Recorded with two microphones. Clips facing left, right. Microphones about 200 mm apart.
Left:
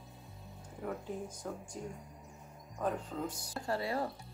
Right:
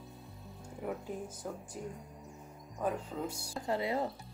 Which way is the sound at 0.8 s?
5° right (ahead or behind).